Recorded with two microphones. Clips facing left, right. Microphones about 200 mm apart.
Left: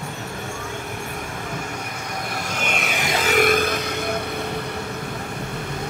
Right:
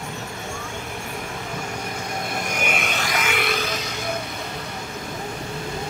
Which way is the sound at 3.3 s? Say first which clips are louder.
Left 7 dB; 50° left (ahead or behind).